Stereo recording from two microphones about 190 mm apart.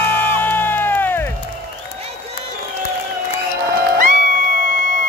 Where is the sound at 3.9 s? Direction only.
40° right (ahead or behind).